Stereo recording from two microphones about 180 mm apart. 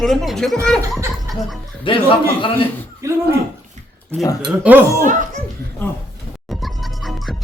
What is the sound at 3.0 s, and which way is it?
Speech, 15° right (ahead or behind).